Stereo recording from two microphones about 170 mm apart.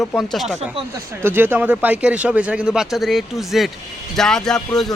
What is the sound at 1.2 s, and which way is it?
Speech, 10° right (ahead or behind).